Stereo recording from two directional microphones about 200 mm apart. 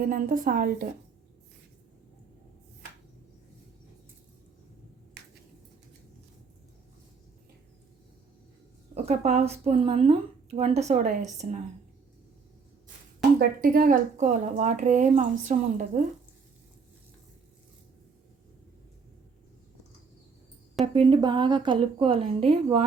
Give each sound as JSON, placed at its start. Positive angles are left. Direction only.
{"t": 0.1, "sound": "a woman's voice", "side_deg": -45}
{"t": 9.0, "sound": "a woman's voice", "side_deg": -35}
{"t": 13.6, "sound": "a woman's voice", "side_deg": -45}
{"t": 20.8, "sound": "a woman's voice", "side_deg": -25}